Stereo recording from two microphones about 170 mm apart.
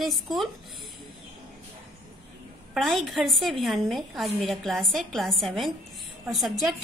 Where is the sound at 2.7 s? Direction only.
Centre (ahead or behind).